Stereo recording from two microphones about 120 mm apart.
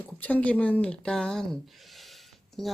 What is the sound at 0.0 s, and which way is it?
Speech, 15° left (ahead or behind).